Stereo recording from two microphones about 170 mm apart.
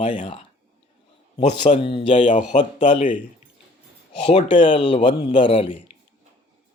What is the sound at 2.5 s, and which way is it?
Speech, 45° left (ahead or behind).